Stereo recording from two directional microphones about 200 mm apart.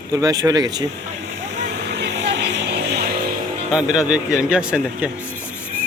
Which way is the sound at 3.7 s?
5° right (ahead or behind).